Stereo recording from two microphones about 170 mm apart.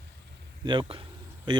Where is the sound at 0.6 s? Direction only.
30° right (ahead or behind).